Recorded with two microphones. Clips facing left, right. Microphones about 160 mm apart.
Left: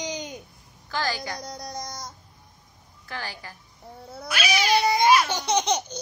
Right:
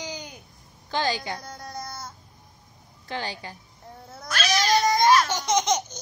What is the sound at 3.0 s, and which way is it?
Speech, 20° right (ahead or behind).